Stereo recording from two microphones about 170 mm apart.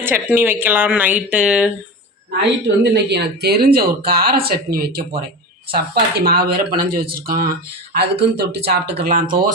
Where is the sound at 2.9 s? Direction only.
75° right (ahead or behind); by 7.5 s 60° right (ahead or behind).